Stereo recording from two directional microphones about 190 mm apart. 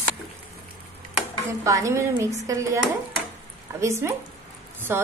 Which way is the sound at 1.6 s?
15° right (ahead or behind).